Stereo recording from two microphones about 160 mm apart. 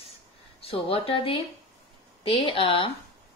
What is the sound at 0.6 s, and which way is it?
Speech, 35° left (ahead or behind).